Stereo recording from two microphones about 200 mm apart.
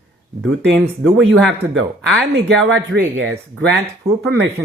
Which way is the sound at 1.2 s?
65° right (ahead or behind).